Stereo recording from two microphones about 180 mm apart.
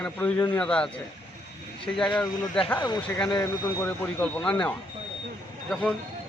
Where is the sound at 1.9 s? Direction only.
5° left (ahead or behind).